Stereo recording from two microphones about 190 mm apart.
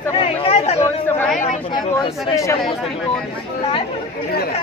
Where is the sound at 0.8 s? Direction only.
10° left (ahead or behind).